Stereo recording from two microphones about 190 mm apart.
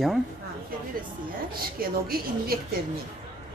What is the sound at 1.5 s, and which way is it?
A woman's voice, 50° right (ahead or behind).